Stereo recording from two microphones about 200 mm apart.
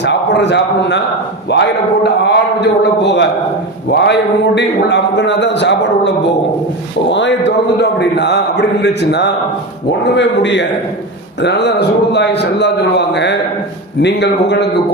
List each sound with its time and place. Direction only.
0.0 s a man's voice: 60° left (ahead or behind)